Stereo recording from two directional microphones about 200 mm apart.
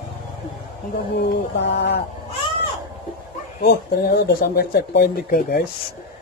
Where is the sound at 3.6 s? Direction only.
50° left (ahead or behind).